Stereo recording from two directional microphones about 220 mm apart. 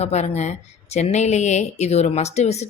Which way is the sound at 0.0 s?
30° left (ahead or behind).